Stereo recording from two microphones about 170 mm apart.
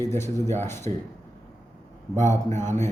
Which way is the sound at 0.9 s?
35° right (ahead or behind).